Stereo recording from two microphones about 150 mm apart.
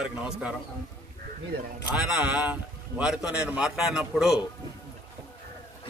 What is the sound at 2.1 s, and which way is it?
A man's voice, 5° right (ahead or behind).